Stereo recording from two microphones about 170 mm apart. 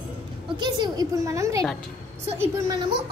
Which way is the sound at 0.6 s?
25° right (ahead or behind).